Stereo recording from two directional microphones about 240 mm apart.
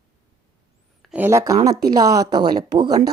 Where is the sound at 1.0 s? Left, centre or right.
Centre.